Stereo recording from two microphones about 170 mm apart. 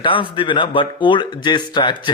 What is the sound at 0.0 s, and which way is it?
Speech, 30° left (ahead or behind).